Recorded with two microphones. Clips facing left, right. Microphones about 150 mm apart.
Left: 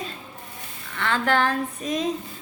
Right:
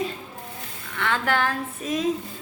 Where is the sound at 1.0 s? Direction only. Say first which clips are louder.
Left 2 dB; 10° right (ahead or behind).